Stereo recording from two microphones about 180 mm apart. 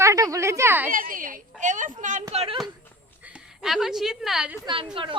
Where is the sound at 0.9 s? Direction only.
50° right (ahead or behind).